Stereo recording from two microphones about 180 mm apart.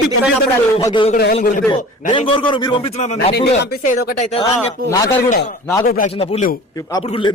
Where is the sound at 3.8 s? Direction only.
45° left (ahead or behind).